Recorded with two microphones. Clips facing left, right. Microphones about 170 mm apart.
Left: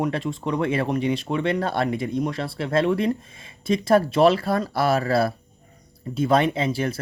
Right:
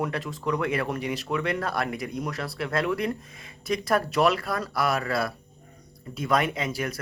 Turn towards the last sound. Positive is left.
turn(degrees=30)  # may be behind; listen again after turning